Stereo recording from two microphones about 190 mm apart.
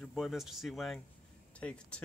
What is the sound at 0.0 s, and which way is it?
Speech, centre (ahead or behind).